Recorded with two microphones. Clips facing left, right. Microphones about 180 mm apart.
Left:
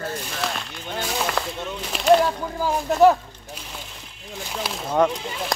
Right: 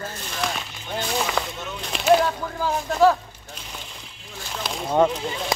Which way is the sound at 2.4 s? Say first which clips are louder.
Left 1 dB; 15° left (ahead or behind).